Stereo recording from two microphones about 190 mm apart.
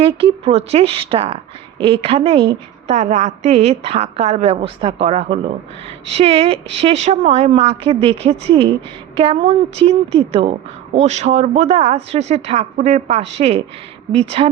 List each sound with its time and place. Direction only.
0.0 s a woman's voice: 30° right (ahead or behind)